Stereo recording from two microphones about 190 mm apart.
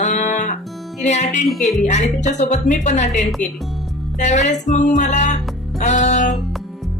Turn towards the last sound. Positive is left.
turn(degrees=40)  # may be behind; listen again after turning